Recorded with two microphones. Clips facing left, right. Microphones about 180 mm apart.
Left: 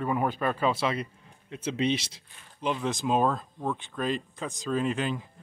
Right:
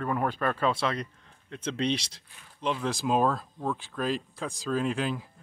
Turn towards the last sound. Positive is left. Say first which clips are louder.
# even
turn(degrees=0)  # may be behind; listen again after turning